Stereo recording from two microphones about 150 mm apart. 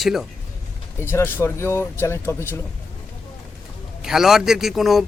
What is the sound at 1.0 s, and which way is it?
Speech, 15° left (ahead or behind).